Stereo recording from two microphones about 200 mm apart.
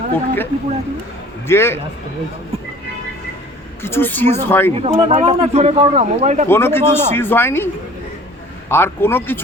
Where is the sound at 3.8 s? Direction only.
10° left (ahead or behind).